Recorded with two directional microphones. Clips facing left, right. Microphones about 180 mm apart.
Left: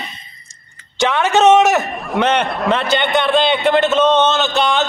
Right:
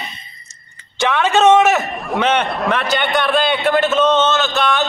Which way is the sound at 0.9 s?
15° left (ahead or behind).